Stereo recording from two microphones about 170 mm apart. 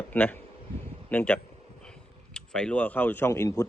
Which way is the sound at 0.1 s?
10° left (ahead or behind).